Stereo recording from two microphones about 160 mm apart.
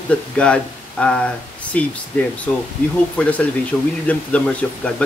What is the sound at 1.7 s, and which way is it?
Speech, 10° left (ahead or behind).